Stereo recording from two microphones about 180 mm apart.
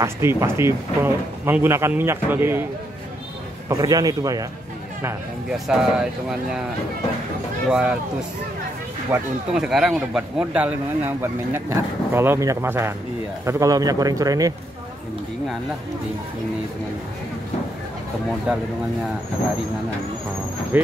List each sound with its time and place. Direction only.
0.0 s speech: 15° right (ahead or behind)
3.6 s a man's voice: 20° right (ahead or behind)
5.5 s speech: 5° right (ahead or behind)
7.7 s speech: 5° right (ahead or behind)
9.1 s a man's voice: 5° right (ahead or behind); by 14.5 s 20° right (ahead or behind)
18.5 s speech: 5° right (ahead or behind)
20.7 s speech: 10° right (ahead or behind)